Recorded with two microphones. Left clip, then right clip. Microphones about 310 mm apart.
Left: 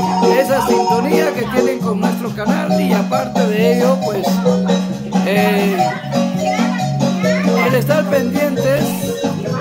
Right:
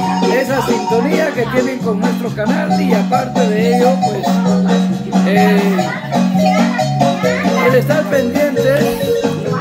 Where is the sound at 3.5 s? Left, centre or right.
Centre.